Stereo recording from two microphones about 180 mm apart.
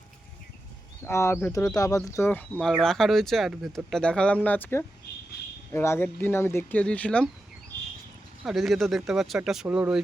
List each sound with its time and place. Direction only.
1.0 s speech: 15° left (ahead or behind)
8.4 s speech: centre (ahead or behind)